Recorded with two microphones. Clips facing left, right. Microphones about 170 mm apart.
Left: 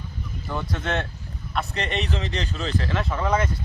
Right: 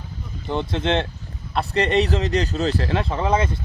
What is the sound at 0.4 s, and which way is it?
Speech, 25° right (ahead or behind).